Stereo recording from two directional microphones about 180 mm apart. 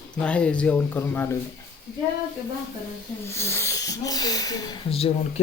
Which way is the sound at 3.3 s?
15° left (ahead or behind).